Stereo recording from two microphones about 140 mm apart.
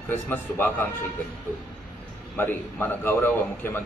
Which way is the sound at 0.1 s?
15° left (ahead or behind).